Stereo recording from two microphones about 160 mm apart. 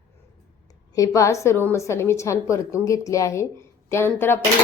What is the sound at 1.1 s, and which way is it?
A woman's voice, 20° left (ahead or behind).